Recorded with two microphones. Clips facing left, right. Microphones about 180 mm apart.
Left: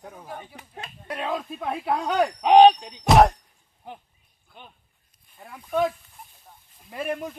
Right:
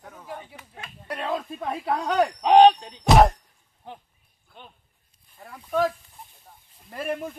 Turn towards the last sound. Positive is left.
turn(degrees=0)  # may be behind; listen again after turning